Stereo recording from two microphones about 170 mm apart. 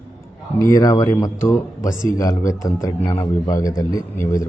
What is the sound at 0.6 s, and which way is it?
A man's voice, 20° left (ahead or behind).